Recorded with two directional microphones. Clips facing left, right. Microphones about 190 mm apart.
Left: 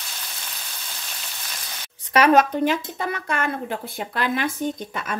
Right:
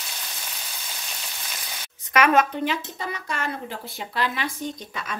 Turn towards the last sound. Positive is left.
turn(degrees=50)  # may be behind; listen again after turning